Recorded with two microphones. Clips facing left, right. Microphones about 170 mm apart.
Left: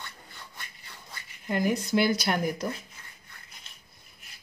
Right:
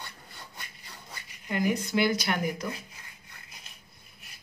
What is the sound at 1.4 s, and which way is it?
Speech, 35° left (ahead or behind).